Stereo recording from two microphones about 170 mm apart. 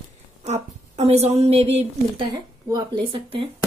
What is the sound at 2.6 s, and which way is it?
Speech, 25° right (ahead or behind).